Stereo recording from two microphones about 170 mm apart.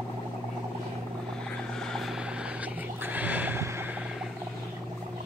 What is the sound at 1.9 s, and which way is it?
Vehicle, centre (ahead or behind).